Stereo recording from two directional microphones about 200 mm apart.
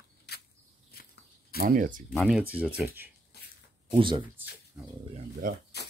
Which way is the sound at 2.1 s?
5° right (ahead or behind).